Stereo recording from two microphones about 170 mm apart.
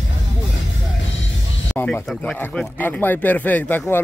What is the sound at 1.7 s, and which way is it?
Speech, 10° left (ahead or behind).